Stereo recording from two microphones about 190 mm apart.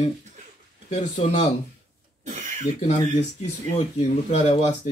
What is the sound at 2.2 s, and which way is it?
Cough, 40° right (ahead or behind).